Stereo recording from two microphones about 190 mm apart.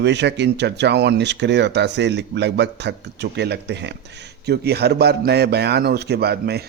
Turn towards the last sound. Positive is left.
turn(degrees=-55)  # may be behind; listen again after turning